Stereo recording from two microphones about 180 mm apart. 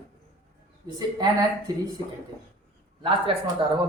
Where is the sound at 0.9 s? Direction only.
20° right (ahead or behind).